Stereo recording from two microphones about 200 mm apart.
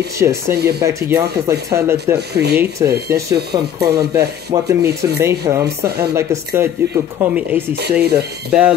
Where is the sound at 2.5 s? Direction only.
15° right (ahead or behind).